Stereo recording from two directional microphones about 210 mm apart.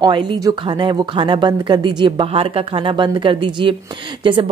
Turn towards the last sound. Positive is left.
turn(degrees=-25)  # may be behind; listen again after turning